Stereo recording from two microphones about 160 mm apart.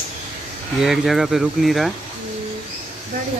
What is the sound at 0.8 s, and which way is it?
Speech, centre (ahead or behind).